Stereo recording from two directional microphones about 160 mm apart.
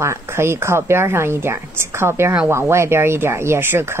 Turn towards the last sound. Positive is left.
turn(degrees=-15)  # may be behind; listen again after turning